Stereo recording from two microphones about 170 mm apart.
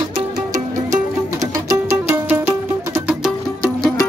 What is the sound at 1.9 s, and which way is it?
Music, 15° right (ahead or behind).